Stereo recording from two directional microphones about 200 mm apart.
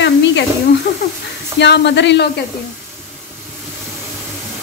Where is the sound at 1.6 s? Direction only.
60° left (ahead or behind).